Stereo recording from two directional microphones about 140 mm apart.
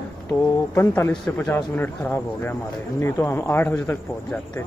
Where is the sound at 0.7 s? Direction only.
15° left (ahead or behind).